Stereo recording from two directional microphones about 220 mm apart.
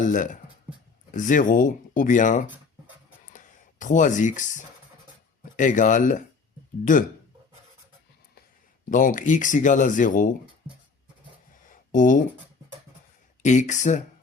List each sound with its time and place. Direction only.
0.0 s speech: 35° left (ahead or behind)
8.9 s speech: 35° left (ahead or behind)
11.7 s a sound: 35° left (ahead or behind)
13.4 s speech: 35° left (ahead or behind)